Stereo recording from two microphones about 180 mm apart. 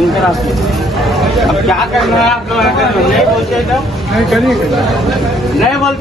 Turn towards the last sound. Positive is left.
turn(degrees=0)  # may be behind; listen again after turning